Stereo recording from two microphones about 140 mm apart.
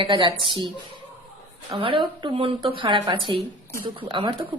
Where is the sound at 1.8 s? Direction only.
35° right (ahead or behind).